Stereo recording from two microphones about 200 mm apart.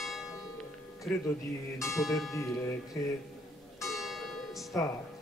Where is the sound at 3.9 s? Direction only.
Centre (ahead or behind).